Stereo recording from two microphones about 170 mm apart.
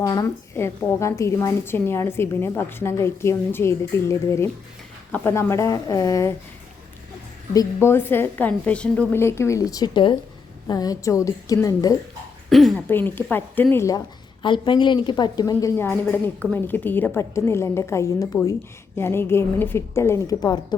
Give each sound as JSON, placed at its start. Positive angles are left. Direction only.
{"t": 0.0, "sound": "a woman's voice", "side_deg": 20}
{"t": 7.5, "sound": "a woman's voice", "side_deg": 20}
{"t": 12.5, "sound": "speech", "side_deg": 0}
{"t": 12.9, "sound": "a woman's voice", "side_deg": 10}
{"t": 14.4, "sound": "a woman's voice", "side_deg": 30}